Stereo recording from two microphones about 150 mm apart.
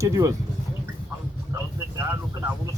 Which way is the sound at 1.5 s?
20° right (ahead or behind).